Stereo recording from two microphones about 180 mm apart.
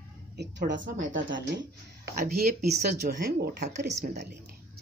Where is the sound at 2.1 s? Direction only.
55° right (ahead or behind).